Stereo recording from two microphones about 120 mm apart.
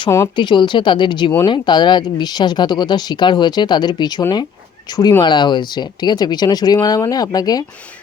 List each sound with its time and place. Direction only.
0.3 s speech: 40° left (ahead or behind)